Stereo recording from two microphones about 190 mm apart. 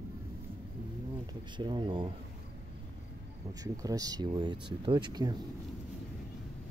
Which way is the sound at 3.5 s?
20° right (ahead or behind).